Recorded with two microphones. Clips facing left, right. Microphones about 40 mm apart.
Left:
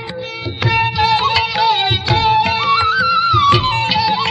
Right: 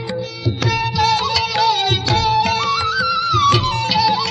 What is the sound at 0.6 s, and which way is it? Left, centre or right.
Music, left.